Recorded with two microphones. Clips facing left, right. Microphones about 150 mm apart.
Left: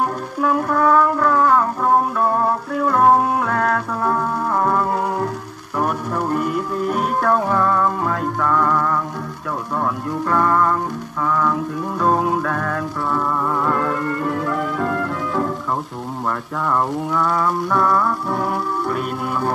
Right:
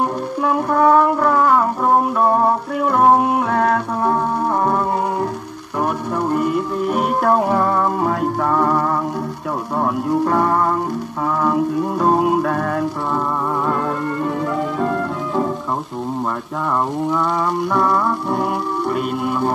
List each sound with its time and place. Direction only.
0.6 s music: 20° right (ahead or behind)
0.8 s music: 30° right (ahead or behind)
2.8 s music: 15° right (ahead or behind)
6.3 s music: 5° right (ahead or behind)
7.2 s music: 30° right (ahead or behind)
14.8 s music: 20° right (ahead or behind)
17.7 s music: 15° right (ahead or behind)
18.9 s music: 5° right (ahead or behind)